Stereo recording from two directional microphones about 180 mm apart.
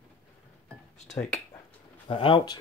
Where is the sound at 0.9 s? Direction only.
40° left (ahead or behind).